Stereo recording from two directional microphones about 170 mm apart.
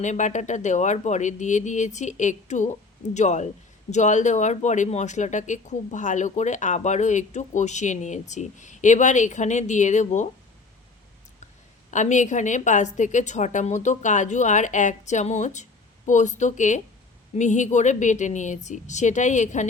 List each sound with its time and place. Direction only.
0.0 s a man's voice: 45° left (ahead or behind)
11.9 s a man's voice: 45° left (ahead or behind)